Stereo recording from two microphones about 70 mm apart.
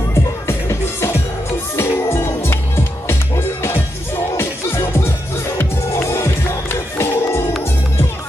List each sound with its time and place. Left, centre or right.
0.5 s music: left